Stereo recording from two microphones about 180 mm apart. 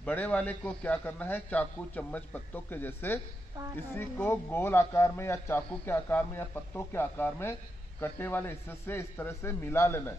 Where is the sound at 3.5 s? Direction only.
20° right (ahead or behind).